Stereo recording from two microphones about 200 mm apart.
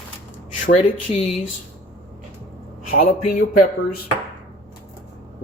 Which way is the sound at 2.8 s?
45° left (ahead or behind).